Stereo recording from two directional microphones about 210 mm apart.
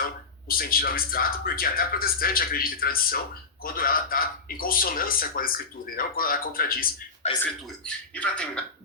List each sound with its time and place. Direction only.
0.4 s speech: 45° left (ahead or behind)
7.4 s speech: 5° left (ahead or behind)